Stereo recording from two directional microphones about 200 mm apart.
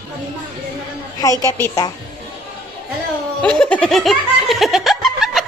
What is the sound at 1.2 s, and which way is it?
Speech, 15° left (ahead or behind).